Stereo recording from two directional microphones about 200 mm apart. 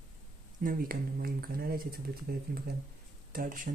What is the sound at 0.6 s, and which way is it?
Speech, 45° right (ahead or behind).